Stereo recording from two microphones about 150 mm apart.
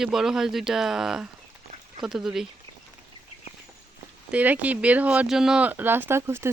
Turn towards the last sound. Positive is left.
turn(degrees=-15)  # may be behind; listen again after turning